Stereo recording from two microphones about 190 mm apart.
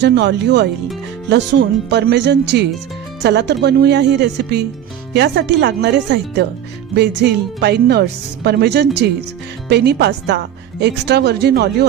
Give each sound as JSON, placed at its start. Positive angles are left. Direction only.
{"t": 0.0, "sound": "speech", "side_deg": -65}